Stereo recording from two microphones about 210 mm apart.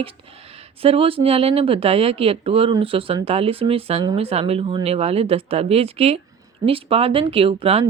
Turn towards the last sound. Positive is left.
turn(degrees=-25)  # may be behind; listen again after turning